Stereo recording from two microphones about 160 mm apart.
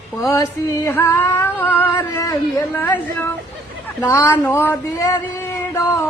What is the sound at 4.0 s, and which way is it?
Female singing, 20° left (ahead or behind).